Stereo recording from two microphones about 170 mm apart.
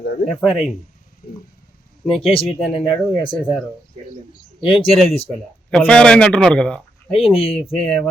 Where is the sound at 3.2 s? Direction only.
30° left (ahead or behind).